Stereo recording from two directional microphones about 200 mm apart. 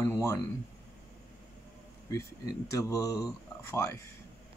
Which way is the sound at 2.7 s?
15° left (ahead or behind).